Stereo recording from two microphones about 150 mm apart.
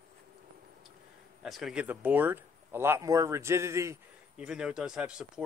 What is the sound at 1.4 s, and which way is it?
Speech, centre (ahead or behind).